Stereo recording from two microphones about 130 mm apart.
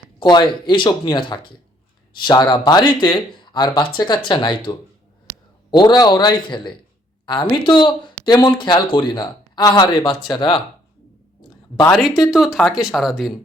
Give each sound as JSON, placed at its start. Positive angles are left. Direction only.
{"t": 0.2, "sound": "speech", "side_deg": 35}
{"t": 5.7, "sound": "speech", "side_deg": 35}
{"t": 11.9, "sound": "speech", "side_deg": 0}